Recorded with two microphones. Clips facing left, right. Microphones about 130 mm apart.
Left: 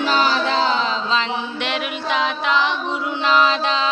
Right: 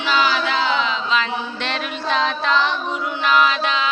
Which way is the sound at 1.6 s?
15° left (ahead or behind).